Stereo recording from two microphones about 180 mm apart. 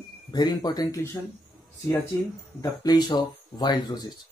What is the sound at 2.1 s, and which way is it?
Speech, 20° left (ahead or behind).